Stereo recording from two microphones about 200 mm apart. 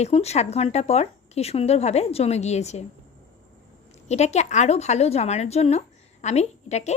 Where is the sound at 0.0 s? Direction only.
30° left (ahead or behind).